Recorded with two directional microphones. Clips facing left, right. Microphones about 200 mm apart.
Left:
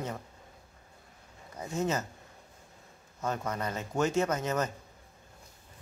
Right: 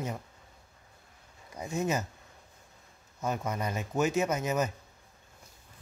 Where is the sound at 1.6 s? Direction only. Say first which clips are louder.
Even; 10° right (ahead or behind).